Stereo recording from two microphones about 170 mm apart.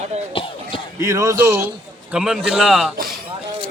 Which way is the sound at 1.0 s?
20° right (ahead or behind).